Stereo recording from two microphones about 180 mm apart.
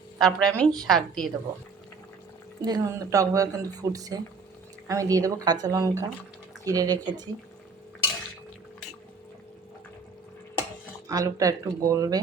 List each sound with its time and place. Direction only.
0.2 s a woman's voice: centre (ahead or behind)
2.6 s speech: 20° right (ahead or behind)
11.1 s speech: 20° right (ahead or behind)